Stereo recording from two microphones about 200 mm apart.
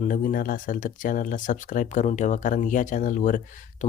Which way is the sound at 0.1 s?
45° left (ahead or behind).